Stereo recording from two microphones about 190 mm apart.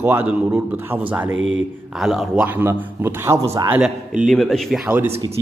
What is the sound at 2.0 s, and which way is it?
A man's voice, centre (ahead or behind).